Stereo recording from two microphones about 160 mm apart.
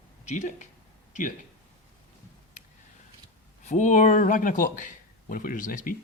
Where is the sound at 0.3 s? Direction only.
50° left (ahead or behind).